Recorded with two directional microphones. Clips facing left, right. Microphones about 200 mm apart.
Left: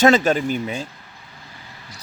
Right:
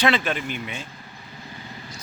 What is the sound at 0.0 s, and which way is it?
Speech, 40° left (ahead or behind).